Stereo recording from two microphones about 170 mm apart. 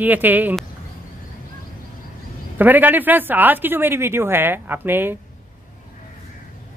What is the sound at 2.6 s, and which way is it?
Speech, 10° right (ahead or behind).